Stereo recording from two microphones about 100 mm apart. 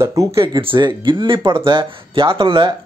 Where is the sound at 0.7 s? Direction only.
50° right (ahead or behind).